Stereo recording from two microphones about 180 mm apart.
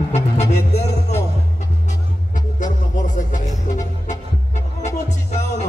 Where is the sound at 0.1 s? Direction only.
35° left (ahead or behind).